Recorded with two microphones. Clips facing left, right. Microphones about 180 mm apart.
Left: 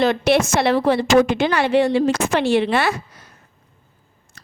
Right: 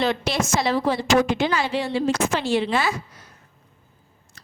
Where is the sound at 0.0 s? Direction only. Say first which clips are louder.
Left 7 dB; 55° left (ahead or behind).